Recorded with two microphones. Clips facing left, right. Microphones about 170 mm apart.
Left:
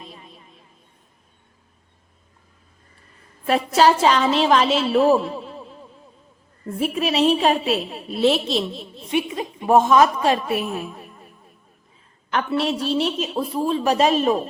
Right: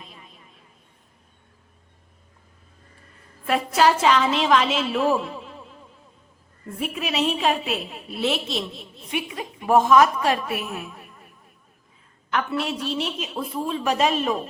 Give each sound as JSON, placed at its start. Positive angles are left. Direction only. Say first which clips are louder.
{"t": 3.4, "sound": "a woman's voice", "louder": "left 3 dB", "side_deg": 30}
{"t": 6.7, "sound": "a woman's voice", "louder": "left 5 dB", "side_deg": 30}
{"t": 12.3, "sound": "a woman's voice", "louder": "left 4 dB", "side_deg": 30}